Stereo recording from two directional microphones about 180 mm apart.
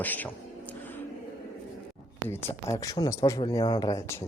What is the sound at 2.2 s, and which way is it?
Speech, 15° left (ahead or behind).